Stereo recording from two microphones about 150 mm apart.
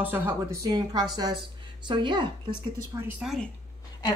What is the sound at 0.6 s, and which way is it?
A woman's voice, 25° right (ahead or behind).